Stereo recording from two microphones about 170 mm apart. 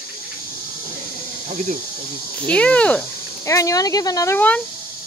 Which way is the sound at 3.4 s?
20° left (ahead or behind).